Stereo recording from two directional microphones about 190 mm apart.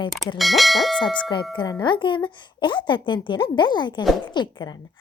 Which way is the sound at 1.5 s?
20° left (ahead or behind).